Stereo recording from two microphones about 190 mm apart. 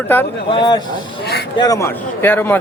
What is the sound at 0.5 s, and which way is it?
Speech, 25° left (ahead or behind).